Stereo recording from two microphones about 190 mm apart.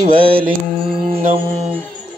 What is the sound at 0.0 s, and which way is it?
Mantra, 50° right (ahead or behind).